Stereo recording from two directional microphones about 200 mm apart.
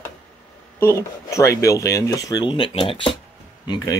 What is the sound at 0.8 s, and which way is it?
Speech, 15° left (ahead or behind).